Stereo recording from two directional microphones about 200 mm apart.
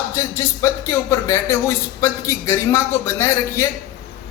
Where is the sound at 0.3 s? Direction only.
15° left (ahead or behind).